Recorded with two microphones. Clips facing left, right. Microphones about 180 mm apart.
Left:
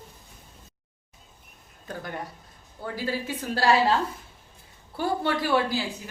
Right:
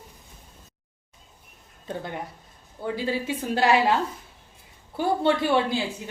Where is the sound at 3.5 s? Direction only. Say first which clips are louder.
Right 1 dB; 20° right (ahead or behind).